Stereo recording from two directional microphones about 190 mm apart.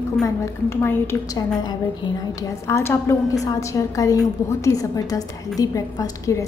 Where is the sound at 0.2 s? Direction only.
15° left (ahead or behind).